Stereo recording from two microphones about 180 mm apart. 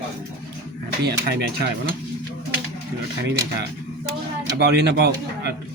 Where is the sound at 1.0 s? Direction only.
65° right (ahead or behind).